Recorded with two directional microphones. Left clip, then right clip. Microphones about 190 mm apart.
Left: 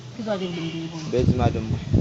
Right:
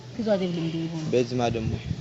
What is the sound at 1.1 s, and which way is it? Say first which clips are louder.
Speech: left 1 dB; 45° right (ahead or behind).